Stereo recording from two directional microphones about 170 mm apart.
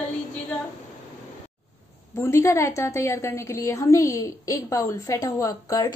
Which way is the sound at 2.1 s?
15° left (ahead or behind).